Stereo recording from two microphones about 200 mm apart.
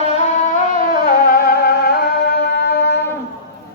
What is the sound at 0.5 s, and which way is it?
Music, 45° left (ahead or behind).